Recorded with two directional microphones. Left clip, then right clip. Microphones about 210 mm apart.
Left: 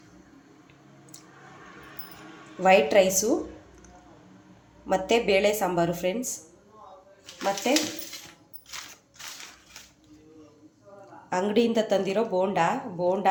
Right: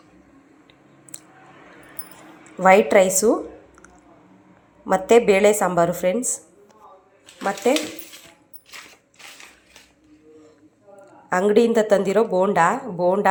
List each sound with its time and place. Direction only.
2.6 s speech: 20° right (ahead or behind)
4.9 s speech: 20° right (ahead or behind)
11.3 s a woman's voice: 20° right (ahead or behind)